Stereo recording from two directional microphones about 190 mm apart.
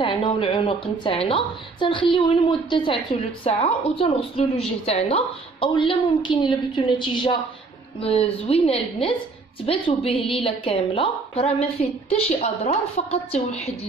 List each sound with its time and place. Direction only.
0.0 s a woman's voice: 25° left (ahead or behind)